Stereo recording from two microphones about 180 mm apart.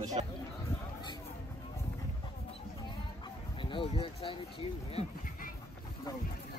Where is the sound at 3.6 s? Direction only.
30° left (ahead or behind).